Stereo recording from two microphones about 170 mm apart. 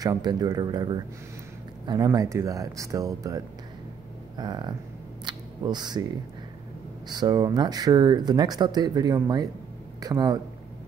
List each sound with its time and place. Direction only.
0.0 s speech: 25° right (ahead or behind)
5.2 s a sound: 25° right (ahead or behind)
7.1 s speech: 25° right (ahead or behind)